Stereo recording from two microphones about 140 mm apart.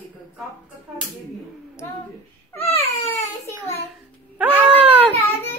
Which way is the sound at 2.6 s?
15° left (ahead or behind).